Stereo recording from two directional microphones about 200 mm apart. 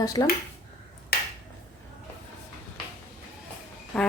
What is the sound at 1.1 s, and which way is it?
Finger snapping, 50° left (ahead or behind).